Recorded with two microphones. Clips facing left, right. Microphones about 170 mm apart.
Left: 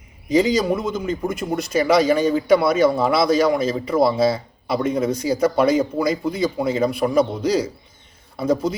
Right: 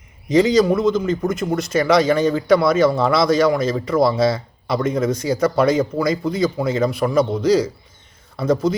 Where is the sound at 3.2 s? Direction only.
30° left (ahead or behind).